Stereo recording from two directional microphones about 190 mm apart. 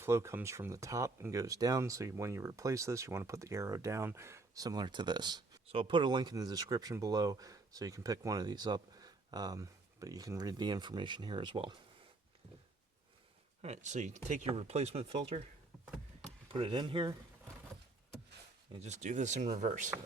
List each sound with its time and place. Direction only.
0.0 s speech: 15° right (ahead or behind)
13.6 s speech: 35° right (ahead or behind)
16.5 s speech: 25° right (ahead or behind)
18.7 s speech: 35° right (ahead or behind)